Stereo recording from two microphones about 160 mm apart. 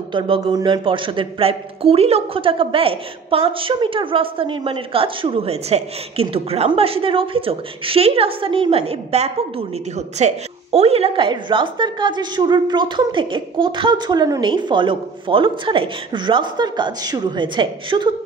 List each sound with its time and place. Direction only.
0.1 s a man's voice: 30° right (ahead or behind)